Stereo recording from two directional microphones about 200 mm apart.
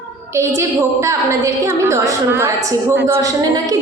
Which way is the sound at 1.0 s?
15° right (ahead or behind).